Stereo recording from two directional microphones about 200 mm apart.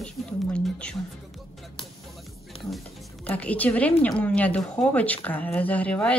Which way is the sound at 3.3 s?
5° left (ahead or behind).